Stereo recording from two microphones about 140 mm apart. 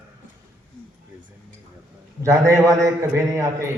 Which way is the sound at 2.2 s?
20° right (ahead or behind).